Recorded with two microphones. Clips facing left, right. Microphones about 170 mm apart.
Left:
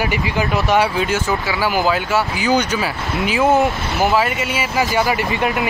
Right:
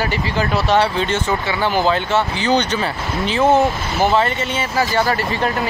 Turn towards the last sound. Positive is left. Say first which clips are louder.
# left 1 dB
turn(degrees=15)  # may be behind; listen again after turning